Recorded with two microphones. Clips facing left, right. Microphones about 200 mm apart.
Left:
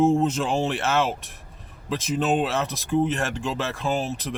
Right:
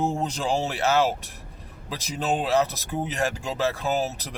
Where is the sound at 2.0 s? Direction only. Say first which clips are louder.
Left 2 dB; centre (ahead or behind).